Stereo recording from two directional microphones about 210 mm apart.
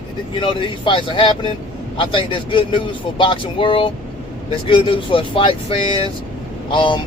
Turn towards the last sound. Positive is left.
turn(degrees=25)  # may be behind; listen again after turning